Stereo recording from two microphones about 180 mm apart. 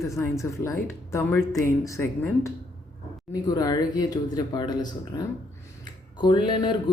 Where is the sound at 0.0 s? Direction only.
15° left (ahead or behind).